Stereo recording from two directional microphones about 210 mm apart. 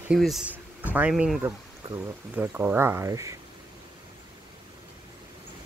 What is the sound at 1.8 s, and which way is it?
Speech, 15° right (ahead or behind).